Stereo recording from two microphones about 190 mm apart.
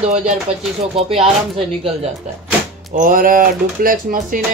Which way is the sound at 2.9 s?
45° right (ahead or behind).